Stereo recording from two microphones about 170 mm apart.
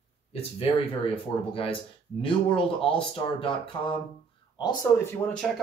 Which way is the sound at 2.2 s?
30° left (ahead or behind).